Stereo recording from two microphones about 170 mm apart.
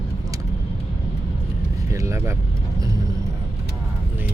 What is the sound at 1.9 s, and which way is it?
Speech, 15° right (ahead or behind).